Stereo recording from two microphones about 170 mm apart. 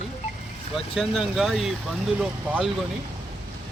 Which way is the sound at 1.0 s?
Centre (ahead or behind).